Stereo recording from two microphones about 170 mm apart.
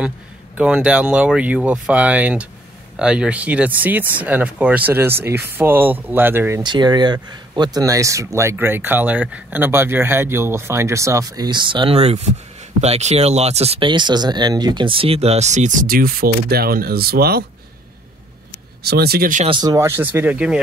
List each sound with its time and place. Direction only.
0.6 s speech: 5° right (ahead or behind)
6.6 s speech: 25° right (ahead or behind); by 17.5 s 65° right (ahead or behind)
18.8 s speech: 70° right (ahead or behind)
19.4 s speech: 25° right (ahead or behind); by 20.6 s 5° right (ahead or behind)